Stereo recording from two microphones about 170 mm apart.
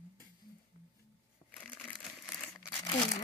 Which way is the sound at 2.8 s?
25° left (ahead or behind).